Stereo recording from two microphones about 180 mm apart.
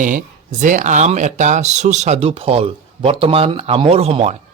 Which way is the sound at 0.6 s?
45° right (ahead or behind).